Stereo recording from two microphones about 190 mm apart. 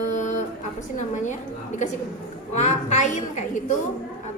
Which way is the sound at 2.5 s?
35° left (ahead or behind).